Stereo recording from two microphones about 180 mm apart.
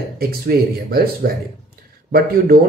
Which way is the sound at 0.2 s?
60° right (ahead or behind).